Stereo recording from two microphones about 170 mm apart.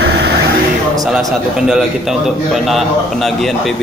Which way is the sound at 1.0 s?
Centre (ahead or behind).